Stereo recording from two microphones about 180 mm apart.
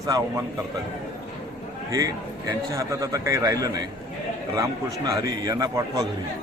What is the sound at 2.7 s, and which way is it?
A man's voice, 15° right (ahead or behind).